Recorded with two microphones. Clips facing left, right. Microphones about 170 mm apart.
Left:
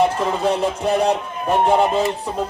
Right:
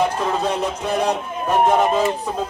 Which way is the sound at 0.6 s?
25° left (ahead or behind).